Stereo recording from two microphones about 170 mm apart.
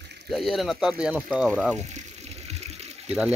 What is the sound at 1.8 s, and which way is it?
Water, 40° right (ahead or behind).